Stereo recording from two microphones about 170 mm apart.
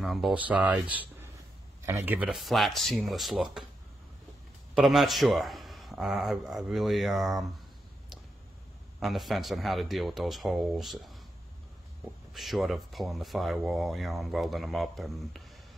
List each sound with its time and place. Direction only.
0.0 s speech: centre (ahead or behind)
4.7 s speech: centre (ahead or behind)
9.0 s speech: centre (ahead or behind)
12.3 s speech: centre (ahead or behind)